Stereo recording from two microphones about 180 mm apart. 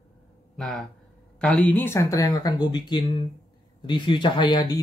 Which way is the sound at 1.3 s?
5° left (ahead or behind).